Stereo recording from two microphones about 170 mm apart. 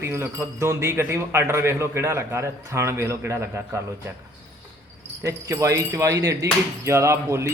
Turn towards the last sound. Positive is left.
turn(degrees=-15)  # may be behind; listen again after turning